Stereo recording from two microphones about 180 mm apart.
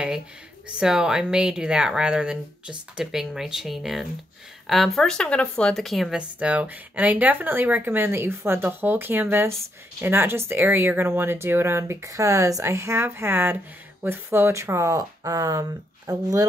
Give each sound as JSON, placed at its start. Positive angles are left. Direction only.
{"t": 0.7, "sound": "speech", "side_deg": -5}